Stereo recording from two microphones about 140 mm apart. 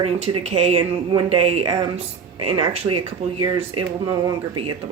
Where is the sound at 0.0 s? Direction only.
45° right (ahead or behind).